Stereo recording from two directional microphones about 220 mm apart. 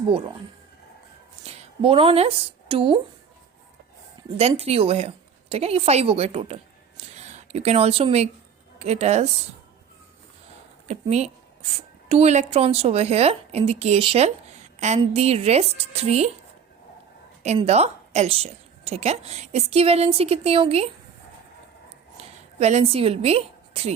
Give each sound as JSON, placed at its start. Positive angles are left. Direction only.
{"t": 1.5, "sound": "speech", "side_deg": -25}
{"t": 4.4, "sound": "a woman's voice", "side_deg": -30}
{"t": 10.8, "sound": "a woman's voice", "side_deg": -30}
{"t": 17.4, "sound": "a woman's voice", "side_deg": -30}
{"t": 22.2, "sound": "a woman's voice", "side_deg": -30}